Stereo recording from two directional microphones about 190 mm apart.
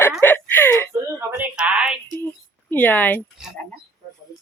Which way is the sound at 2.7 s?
10° left (ahead or behind).